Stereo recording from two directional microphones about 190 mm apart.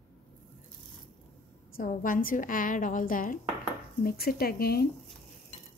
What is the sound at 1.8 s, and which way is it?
A woman's voice, 45° left (ahead or behind).